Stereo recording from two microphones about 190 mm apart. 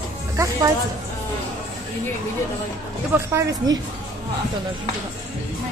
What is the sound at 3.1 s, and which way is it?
Speech, 15° right (ahead or behind).